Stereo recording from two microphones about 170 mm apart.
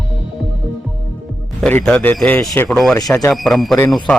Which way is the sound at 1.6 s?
5° left (ahead or behind).